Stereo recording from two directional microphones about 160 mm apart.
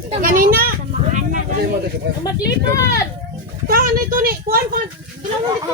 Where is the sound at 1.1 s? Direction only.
55° right (ahead or behind).